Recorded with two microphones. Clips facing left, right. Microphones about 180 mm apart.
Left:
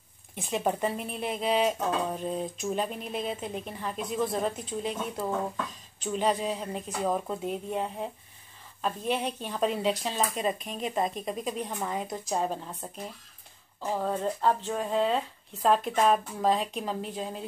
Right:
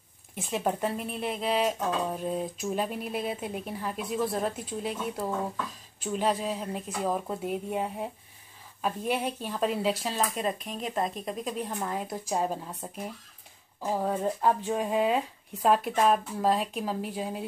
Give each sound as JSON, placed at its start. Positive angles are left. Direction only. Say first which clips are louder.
{"t": 0.4, "sound": "speech", "louder": "left 1 dB", "side_deg": 0}